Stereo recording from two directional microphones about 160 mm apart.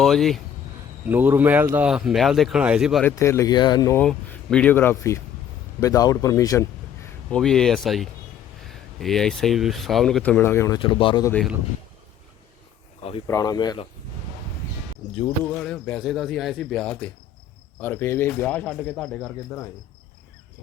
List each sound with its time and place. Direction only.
0.0 s speech: centre (ahead or behind)
1.0 s a man's voice: 10° right (ahead or behind)
3.0 s speech: 15° left (ahead or behind)
3.9 s a man's voice: 10° left (ahead or behind)
7.3 s speech: 5° left (ahead or behind)
10.8 s speech: 35° left (ahead or behind)
13.0 s speech: 35° left (ahead or behind)
13.2 s speech: 20° left (ahead or behind)
15.5 s speech: 5° left (ahead or behind)